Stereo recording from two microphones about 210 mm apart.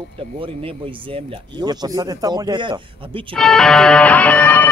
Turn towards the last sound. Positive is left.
turn(degrees=10)  # may be behind; listen again after turning